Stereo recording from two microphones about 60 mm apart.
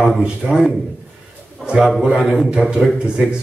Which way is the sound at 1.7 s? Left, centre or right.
Centre.